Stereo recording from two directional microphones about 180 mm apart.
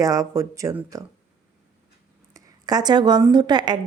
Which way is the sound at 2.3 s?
20° right (ahead or behind).